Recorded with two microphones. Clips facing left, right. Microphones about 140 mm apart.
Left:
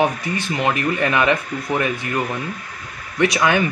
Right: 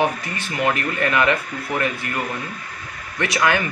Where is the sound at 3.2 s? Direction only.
15° left (ahead or behind).